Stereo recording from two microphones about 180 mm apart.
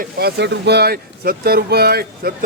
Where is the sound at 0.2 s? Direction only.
65° right (ahead or behind).